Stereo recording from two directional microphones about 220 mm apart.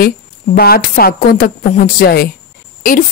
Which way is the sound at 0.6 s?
45° left (ahead or behind).